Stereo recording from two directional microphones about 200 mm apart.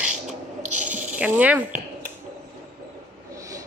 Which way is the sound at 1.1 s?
5° right (ahead or behind).